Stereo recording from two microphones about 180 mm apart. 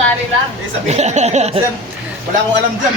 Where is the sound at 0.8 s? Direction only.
40° right (ahead or behind).